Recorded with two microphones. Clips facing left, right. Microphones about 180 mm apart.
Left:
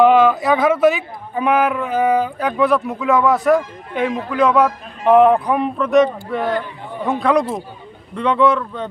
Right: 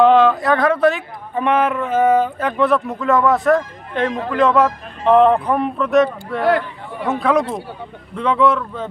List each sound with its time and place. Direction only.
0.0 s speech: 5° left (ahead or behind)
6.4 s speech: 75° right (ahead or behind)
7.1 s speech: centre (ahead or behind)